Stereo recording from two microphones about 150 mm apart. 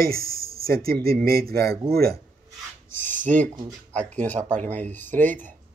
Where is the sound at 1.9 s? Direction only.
90° right.